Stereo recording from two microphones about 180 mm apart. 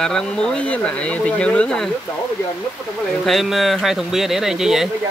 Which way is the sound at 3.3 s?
Centre (ahead or behind).